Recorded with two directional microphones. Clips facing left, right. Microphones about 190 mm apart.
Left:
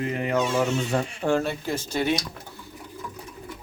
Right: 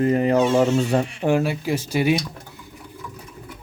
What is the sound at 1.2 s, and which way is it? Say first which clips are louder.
Speech: right 4 dB; 10° right (ahead or behind).